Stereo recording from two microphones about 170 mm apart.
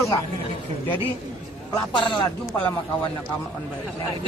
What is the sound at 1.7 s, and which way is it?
Speech, 30° left (ahead or behind).